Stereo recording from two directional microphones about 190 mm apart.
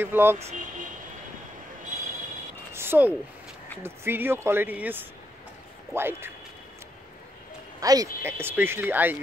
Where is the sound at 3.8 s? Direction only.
10° right (ahead or behind).